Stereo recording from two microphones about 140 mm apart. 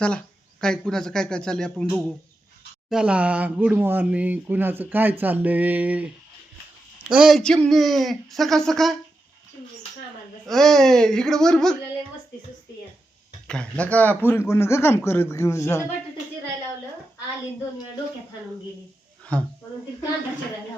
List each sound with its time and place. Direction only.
0.6 s speech: 5° left (ahead or behind)
10.4 s speech: 5° left (ahead or behind)
13.5 s speech: 10° left (ahead or behind)
19.2 s speech: 10° left (ahead or behind)